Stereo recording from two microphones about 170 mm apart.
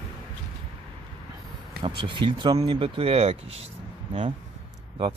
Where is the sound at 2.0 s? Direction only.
30° right (ahead or behind).